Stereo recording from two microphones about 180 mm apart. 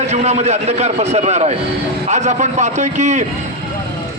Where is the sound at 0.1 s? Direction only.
40° right (ahead or behind).